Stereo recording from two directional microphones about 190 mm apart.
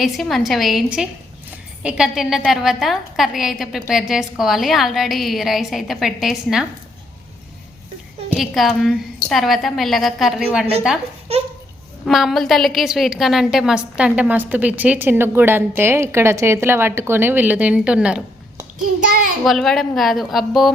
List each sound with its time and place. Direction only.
0.0 s a woman's voice: centre (ahead or behind)
8.3 s a woman's voice: centre (ahead or behind)
11.3 s a sound: 35° right (ahead or behind)
12.0 s a woman's voice: centre (ahead or behind)
18.9 s child singing: 45° right (ahead or behind)
19.5 s a woman's voice: centre (ahead or behind)